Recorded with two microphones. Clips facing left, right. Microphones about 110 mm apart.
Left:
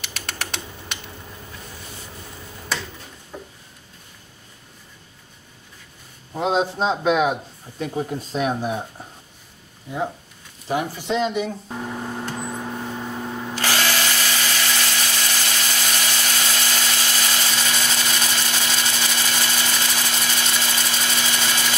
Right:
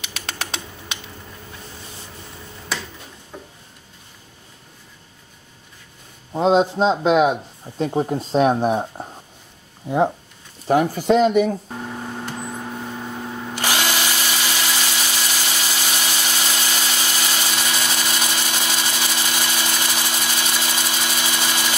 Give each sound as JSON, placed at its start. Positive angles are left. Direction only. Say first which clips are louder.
{"t": 3.3, "sound": "a sound", "louder": "left 1 dB", "side_deg": -15}
{"t": 6.3, "sound": "a man's voice", "louder": "right 5 dB", "side_deg": -25}
{"t": 8.5, "sound": "speech", "louder": "right 6 dB", "side_deg": -45}
{"t": 11.7, "sound": "vehicle", "louder": "left 1 dB", "side_deg": 5}
{"t": 13.6, "sound": "drill", "louder": "right 1 dB", "side_deg": -15}